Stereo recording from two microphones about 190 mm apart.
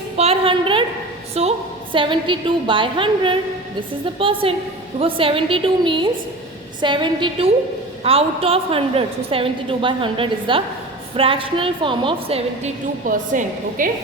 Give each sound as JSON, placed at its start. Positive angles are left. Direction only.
{"t": 0.2, "sound": "a sound", "side_deg": -30}
{"t": 1.4, "sound": "a woman's voice", "side_deg": -30}
{"t": 13.1, "sound": "a woman's voice", "side_deg": -45}